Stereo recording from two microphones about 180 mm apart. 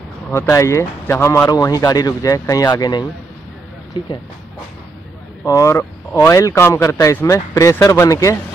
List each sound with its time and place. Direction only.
0.3 s speech: 15° left (ahead or behind)
5.4 s speech: 15° left (ahead or behind)